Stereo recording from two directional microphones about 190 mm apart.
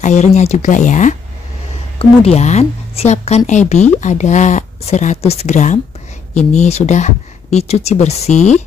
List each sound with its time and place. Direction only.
0.0 s speech: 35° left (ahead or behind)